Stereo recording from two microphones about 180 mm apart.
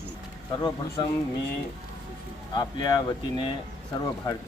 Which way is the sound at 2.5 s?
20° left (ahead or behind).